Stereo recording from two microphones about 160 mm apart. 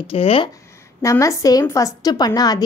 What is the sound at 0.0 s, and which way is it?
Speech, 35° left (ahead or behind).